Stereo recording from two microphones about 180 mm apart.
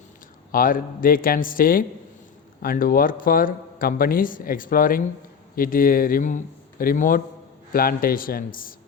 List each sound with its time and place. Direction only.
0.5 s speech: 50° left (ahead or behind)